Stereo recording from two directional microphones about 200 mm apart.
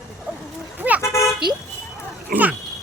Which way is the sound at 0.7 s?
10° right (ahead or behind).